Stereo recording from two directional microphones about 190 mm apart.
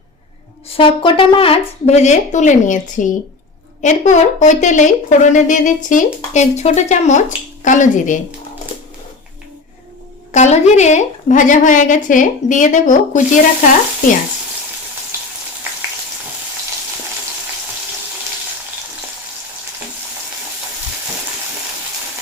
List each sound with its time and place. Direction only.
0.7 s a woman's voice: 30° left (ahead or behind)
10.3 s a woman's voice: 40° left (ahead or behind)